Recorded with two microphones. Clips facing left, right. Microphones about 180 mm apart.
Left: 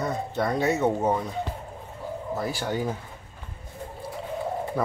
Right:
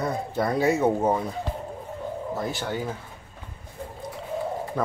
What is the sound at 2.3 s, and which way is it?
Speech, centre (ahead or behind).